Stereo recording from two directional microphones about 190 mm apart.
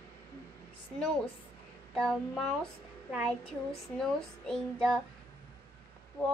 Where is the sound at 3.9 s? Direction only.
5° left (ahead or behind).